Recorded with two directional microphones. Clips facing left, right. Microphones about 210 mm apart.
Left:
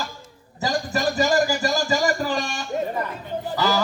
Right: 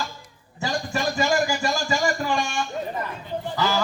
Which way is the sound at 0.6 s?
40° left (ahead or behind).